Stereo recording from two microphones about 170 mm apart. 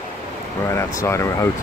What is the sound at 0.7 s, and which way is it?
Speech, 15° left (ahead or behind).